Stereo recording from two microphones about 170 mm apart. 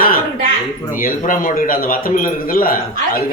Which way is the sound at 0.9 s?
55° left (ahead or behind).